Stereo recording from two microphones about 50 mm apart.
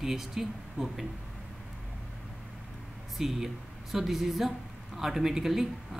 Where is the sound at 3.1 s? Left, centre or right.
Centre.